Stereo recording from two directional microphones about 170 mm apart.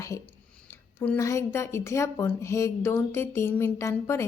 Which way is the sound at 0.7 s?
15° left (ahead or behind).